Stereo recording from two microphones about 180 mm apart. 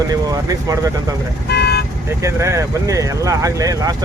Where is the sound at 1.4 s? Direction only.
65° left (ahead or behind).